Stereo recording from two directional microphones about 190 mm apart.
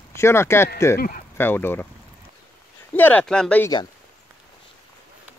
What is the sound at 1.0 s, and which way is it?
Speech, 50° left (ahead or behind).